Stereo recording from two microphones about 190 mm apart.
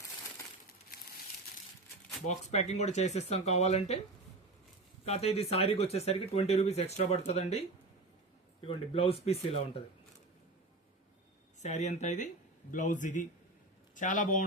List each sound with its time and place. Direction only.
2.2 s speech: 35° left (ahead or behind)
5.0 s speech: 35° left (ahead or behind)
8.6 s speech: 30° left (ahead or behind)
11.6 s a man's voice: 40° left (ahead or behind)